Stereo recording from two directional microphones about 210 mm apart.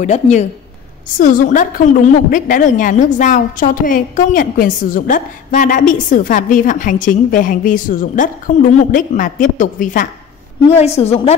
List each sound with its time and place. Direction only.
0.0 s a woman's voice: 35° left (ahead or behind)